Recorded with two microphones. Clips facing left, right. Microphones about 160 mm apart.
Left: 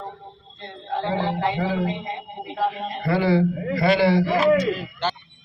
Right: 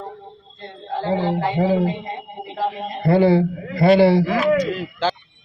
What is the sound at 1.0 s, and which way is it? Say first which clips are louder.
Speech: right 3 dB; 35° right (ahead or behind).